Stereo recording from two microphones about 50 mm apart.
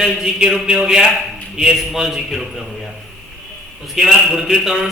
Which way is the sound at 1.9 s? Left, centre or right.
Centre.